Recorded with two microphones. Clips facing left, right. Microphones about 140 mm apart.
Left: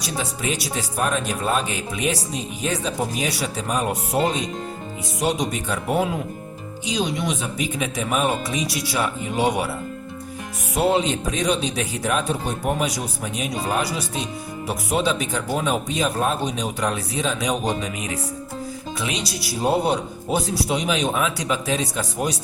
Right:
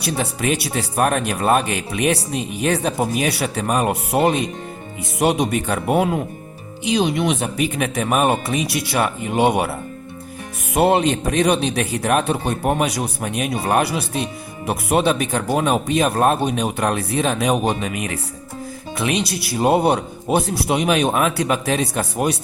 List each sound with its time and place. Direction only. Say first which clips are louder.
0.0 s speech: right 5 dB; 60° right (ahead or behind)
10.8 s speech: right 4 dB; 60° right (ahead or behind)